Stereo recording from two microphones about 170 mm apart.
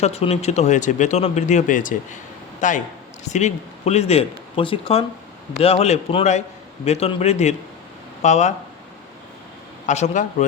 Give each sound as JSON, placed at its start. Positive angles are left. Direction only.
{"t": 0.0, "sound": "a man's voice", "side_deg": 35}
{"t": 9.8, "sound": "speech", "side_deg": 45}